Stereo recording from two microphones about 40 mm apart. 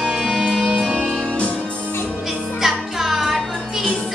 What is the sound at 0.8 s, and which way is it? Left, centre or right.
Music, centre.